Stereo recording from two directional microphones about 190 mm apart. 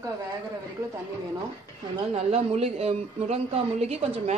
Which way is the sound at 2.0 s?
30° right (ahead or behind).